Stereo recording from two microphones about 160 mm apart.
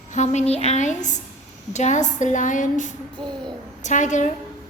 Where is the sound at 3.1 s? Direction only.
30° right (ahead or behind).